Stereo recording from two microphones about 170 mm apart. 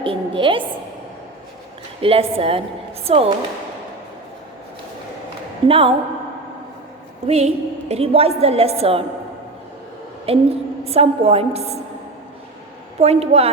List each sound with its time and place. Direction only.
0.0 s a woman's voice: 30° right (ahead or behind)
2.0 s a woman's voice: 35° right (ahead or behind)
5.6 s a woman's voice: 30° right (ahead or behind)
7.3 s a woman's voice: 40° right (ahead or behind)
10.3 s a woman's voice: 35° right (ahead or behind)
13.0 s a woman's voice: 35° right (ahead or behind)